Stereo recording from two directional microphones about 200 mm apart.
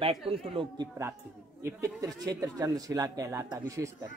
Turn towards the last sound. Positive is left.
turn(degrees=-15)  # may be behind; listen again after turning